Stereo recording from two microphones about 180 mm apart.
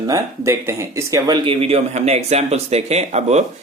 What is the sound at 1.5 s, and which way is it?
Speech, 35° right (ahead or behind).